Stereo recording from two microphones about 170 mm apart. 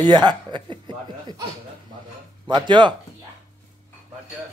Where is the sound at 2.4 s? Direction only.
25° right (ahead or behind).